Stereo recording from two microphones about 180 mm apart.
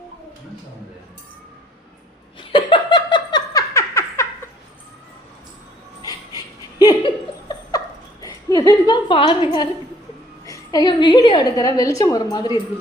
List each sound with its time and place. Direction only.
2.5 s laughter: 25° left (ahead or behind)
6.0 s laughter: 20° left (ahead or behind)
8.2 s a sound: 20° left (ahead or behind)
10.4 s a woman's voice: 20° left (ahead or behind)